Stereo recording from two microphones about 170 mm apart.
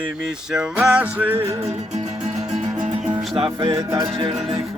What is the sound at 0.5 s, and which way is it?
Music, 5° right (ahead or behind).